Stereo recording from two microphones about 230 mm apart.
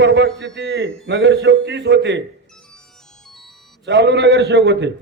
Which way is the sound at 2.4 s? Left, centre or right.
Centre.